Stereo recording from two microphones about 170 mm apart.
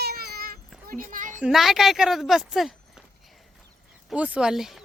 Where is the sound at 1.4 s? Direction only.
Centre (ahead or behind).